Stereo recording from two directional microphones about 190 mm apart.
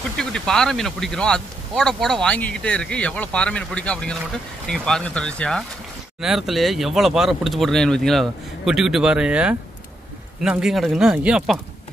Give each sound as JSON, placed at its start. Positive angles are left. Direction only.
{"t": 0.2, "sound": "speech", "side_deg": 5}